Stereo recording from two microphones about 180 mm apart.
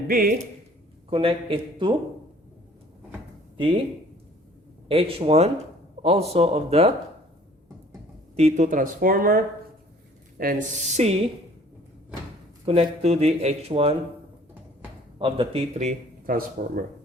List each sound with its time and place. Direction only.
0.1 s speech: 50° right (ahead or behind)
1.1 s a man's voice: 30° right (ahead or behind)
4.9 s speech: 30° right (ahead or behind)
8.4 s speech: 40° right (ahead or behind)
12.6 s speech: 35° right (ahead or behind)
15.2 s speech: 30° right (ahead or behind); by 16.8 s 50° right (ahead or behind)